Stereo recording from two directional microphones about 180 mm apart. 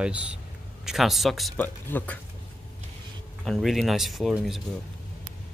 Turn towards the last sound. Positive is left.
turn(degrees=0)  # may be behind; listen again after turning